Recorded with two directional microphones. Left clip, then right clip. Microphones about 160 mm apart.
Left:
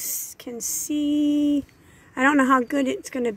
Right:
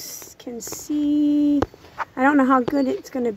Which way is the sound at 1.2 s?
5° right (ahead or behind).